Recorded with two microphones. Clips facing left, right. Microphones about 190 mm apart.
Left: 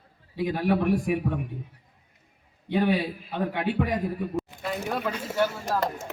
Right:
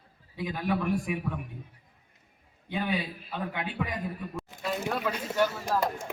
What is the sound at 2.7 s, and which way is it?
Speech, 65° left (ahead or behind).